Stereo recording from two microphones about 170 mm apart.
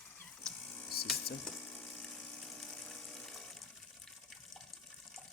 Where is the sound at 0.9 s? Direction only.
65° left (ahead or behind).